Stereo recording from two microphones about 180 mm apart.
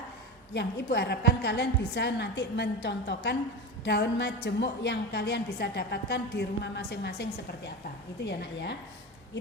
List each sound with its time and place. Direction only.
0.5 s a woman's voice: 70° left (ahead or behind)